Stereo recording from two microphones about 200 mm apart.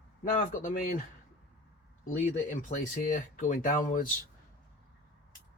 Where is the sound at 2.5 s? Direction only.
40° left (ahead or behind).